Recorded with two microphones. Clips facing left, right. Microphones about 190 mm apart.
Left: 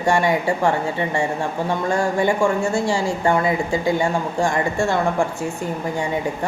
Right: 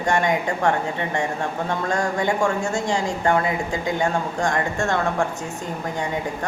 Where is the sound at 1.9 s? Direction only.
5° left (ahead or behind).